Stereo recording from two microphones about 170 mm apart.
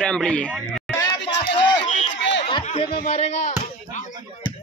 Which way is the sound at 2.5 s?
35° left (ahead or behind).